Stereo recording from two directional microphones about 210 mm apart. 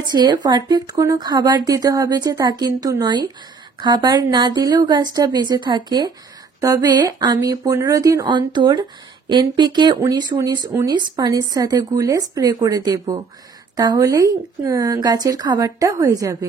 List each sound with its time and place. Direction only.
0.0 s a woman's voice: 20° right (ahead or behind)